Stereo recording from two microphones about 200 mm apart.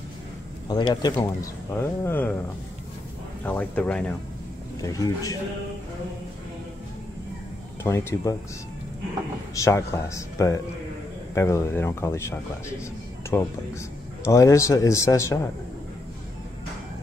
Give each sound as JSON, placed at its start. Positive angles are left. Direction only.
{"t": 0.7, "sound": "speech", "side_deg": 20}
{"t": 3.4, "sound": "speech", "side_deg": 5}
{"t": 7.8, "sound": "speech", "side_deg": 15}
{"t": 9.6, "sound": "speech", "side_deg": 15}
{"t": 13.2, "sound": "music", "side_deg": 15}
{"t": 14.2, "sound": "speech", "side_deg": 15}